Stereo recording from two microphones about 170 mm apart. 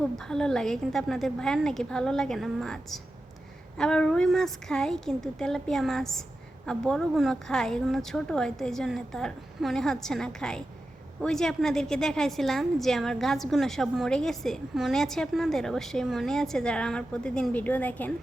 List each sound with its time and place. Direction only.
0.0 s a woman's voice: 5° left (ahead or behind)